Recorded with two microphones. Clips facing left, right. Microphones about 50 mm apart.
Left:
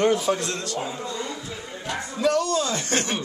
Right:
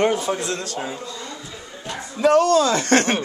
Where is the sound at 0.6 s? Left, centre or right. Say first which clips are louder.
Right 1 dB; right.